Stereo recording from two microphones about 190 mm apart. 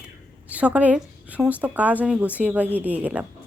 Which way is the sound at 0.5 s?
5° right (ahead or behind).